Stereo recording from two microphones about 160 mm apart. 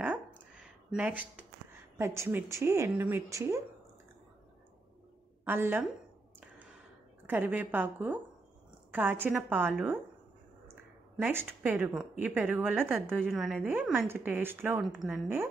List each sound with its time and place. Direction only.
0.6 s a sound: 5° right (ahead or behind)
2.0 s speech: 15° right (ahead or behind)
5.4 s a woman's voice: 10° right (ahead or behind)
7.2 s speech: 10° right (ahead or behind)
10.7 s a sound: 10° right (ahead or behind)
11.6 s speech: 10° right (ahead or behind)
13.2 s a woman's voice: centre (ahead or behind)